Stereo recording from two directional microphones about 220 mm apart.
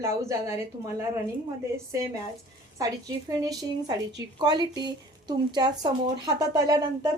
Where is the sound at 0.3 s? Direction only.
15° right (ahead or behind).